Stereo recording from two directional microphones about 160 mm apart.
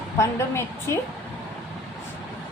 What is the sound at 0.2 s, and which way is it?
Speech, 15° left (ahead or behind).